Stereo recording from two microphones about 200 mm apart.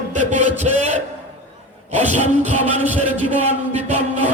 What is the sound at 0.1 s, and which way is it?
Music, 35° right (ahead or behind).